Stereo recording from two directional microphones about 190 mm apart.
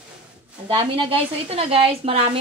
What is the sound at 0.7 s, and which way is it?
A woman's voice, 25° right (ahead or behind).